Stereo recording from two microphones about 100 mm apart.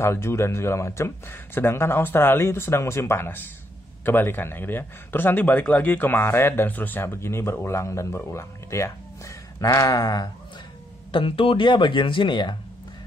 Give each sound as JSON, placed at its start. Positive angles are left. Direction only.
{"t": 0.0, "sound": "speech", "side_deg": 25}
{"t": 11.1, "sound": "speech", "side_deg": 60}